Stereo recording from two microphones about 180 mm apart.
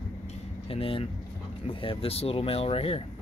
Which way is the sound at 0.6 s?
30° left (ahead or behind).